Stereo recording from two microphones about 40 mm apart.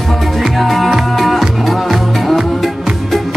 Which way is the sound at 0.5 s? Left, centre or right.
Centre.